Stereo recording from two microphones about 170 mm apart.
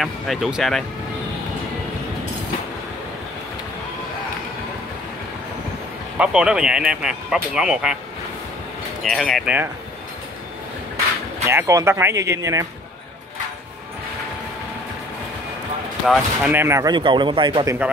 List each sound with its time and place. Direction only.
0.0 s speech: centre (ahead or behind)
6.1 s speech: 5° right (ahead or behind)
9.0 s speech: centre (ahead or behind)
11.4 s speech: 15° right (ahead or behind)
16.1 s speech: 10° right (ahead or behind); by 17.7 s 25° right (ahead or behind)